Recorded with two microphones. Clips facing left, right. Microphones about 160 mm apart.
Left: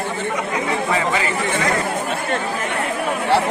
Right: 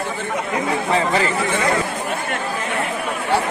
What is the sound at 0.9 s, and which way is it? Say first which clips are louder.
Speech: right 4 dB; 35° right (ahead or behind).